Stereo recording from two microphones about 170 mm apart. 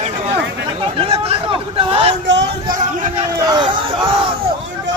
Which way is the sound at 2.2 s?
90° right.